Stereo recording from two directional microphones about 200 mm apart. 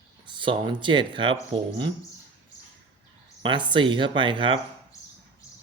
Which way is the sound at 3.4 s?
25° right (ahead or behind).